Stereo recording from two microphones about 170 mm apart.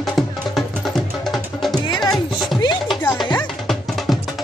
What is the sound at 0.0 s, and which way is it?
Music, centre (ahead or behind).